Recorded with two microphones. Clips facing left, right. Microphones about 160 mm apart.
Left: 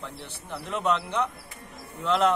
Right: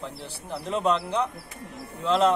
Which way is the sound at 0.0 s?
35° right (ahead or behind).